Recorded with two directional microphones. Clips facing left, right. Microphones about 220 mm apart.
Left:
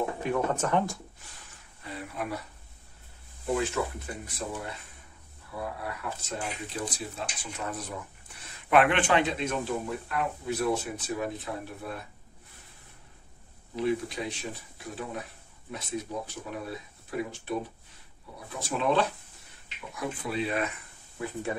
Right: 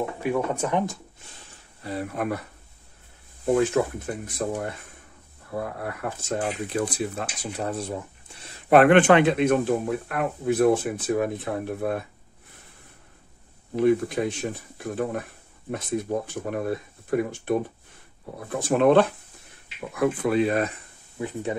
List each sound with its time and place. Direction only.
0.2 s speech: 10° right (ahead or behind)
1.8 s speech: 40° right (ahead or behind)
3.5 s speech: 50° right (ahead or behind)
7.4 s speech: 35° right (ahead or behind); by 12.0 s 55° right (ahead or behind)
13.7 s speech: 50° right (ahead or behind)
21.2 s speech: 20° right (ahead or behind)